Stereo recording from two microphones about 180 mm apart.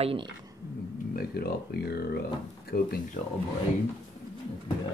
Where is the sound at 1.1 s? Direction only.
60° left (ahead or behind).